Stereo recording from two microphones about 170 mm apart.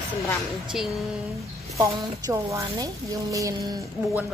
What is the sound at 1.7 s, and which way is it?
A woman's voice, 20° right (ahead or behind).